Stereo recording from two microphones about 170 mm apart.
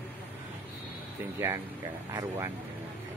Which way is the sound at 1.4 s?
15° right (ahead or behind).